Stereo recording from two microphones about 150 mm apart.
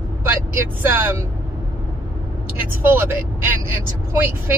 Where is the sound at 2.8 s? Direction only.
15° right (ahead or behind).